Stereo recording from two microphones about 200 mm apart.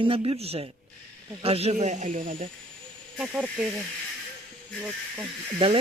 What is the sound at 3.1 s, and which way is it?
Speech, 5° right (ahead or behind).